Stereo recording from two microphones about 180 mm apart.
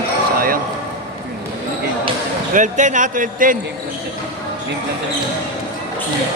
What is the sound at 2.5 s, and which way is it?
Speech, 45° right (ahead or behind).